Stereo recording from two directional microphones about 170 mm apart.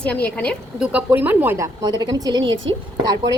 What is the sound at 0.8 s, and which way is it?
Speech, 10° right (ahead or behind).